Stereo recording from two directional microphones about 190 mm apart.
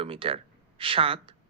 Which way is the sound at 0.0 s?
30° right (ahead or behind).